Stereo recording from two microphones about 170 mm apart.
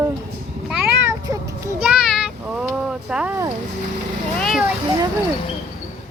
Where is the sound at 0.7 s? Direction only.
15° right (ahead or behind).